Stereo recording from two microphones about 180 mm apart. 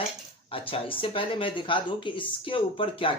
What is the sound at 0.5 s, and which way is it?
Speech, 30° left (ahead or behind).